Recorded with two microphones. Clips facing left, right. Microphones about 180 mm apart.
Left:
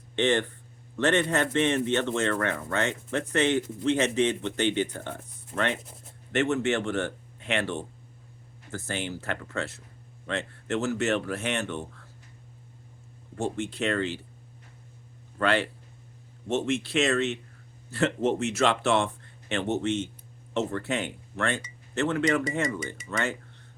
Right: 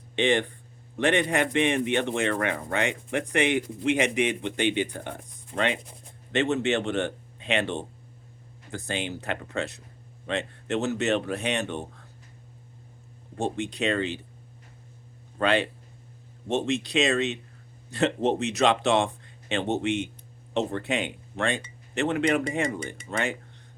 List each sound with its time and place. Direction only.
0.2 s speech: 15° right (ahead or behind)
13.6 s speech: 15° right (ahead or behind)
15.4 s speech: 20° right (ahead or behind)